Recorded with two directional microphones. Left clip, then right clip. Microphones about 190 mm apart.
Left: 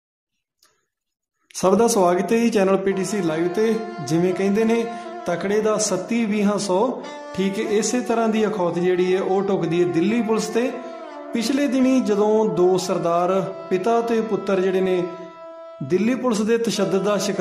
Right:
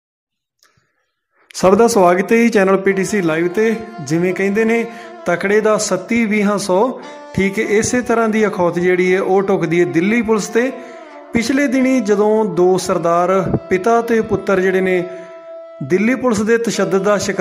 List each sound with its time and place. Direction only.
1.6 s speech: 20° right (ahead or behind)